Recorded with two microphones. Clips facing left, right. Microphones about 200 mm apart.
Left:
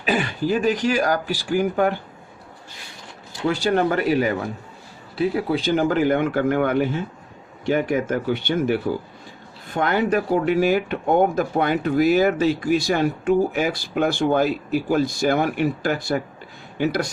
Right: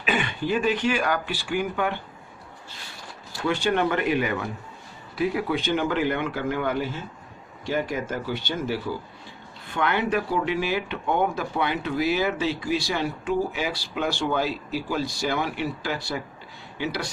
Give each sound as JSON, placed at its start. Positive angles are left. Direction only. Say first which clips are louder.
{"t": 0.0, "sound": "speech", "louder": "left 4 dB", "side_deg": 35}
{"t": 3.5, "sound": "speech", "louder": "left 3 dB", "side_deg": 35}
{"t": 9.6, "sound": "speech", "louder": "left 4 dB", "side_deg": 40}